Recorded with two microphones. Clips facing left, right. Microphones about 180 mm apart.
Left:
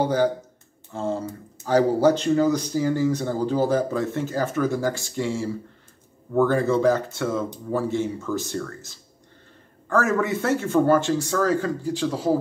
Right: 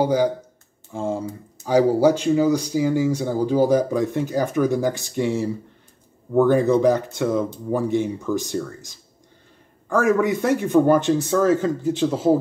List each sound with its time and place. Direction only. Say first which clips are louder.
0.0 s speech: right 2 dB; 10° right (ahead or behind)